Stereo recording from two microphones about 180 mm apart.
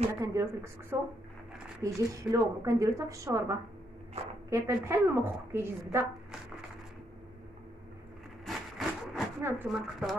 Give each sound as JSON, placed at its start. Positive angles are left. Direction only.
{"t": 0.1, "sound": "a woman's voice", "side_deg": -15}
{"t": 8.5, "sound": "a sound", "side_deg": 0}
{"t": 9.4, "sound": "a woman's voice", "side_deg": -10}